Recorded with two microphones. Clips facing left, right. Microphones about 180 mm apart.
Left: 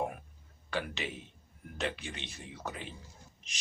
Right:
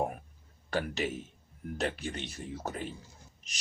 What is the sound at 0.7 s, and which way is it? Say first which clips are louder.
Speech: right 4 dB; 45° right (ahead or behind).